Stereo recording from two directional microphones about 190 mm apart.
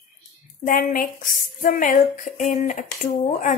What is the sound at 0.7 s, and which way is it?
Speech, 45° left (ahead or behind).